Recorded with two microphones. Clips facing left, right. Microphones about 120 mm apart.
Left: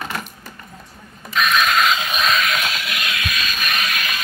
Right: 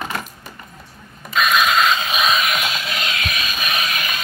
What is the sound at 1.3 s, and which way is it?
Mechanisms, 5° right (ahead or behind).